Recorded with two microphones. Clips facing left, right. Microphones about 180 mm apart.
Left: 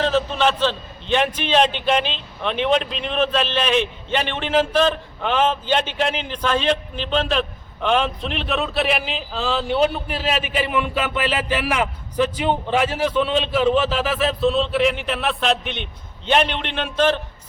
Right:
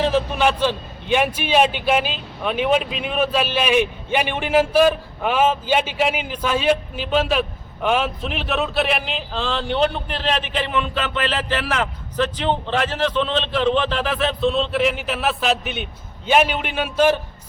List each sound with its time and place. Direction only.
0.0 s a man's voice: 10° right (ahead or behind)